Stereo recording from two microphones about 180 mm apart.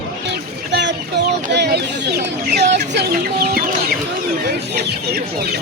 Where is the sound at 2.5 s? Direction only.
65° right (ahead or behind).